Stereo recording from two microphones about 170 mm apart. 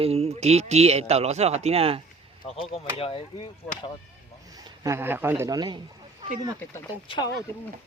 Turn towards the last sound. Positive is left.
turn(degrees=25)  # may be behind; listen again after turning